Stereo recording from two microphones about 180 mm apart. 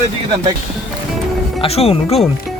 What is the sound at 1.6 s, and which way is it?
Speech, 35° left (ahead or behind).